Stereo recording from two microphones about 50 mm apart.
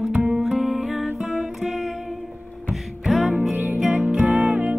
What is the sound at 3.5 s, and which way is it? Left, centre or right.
Music, right.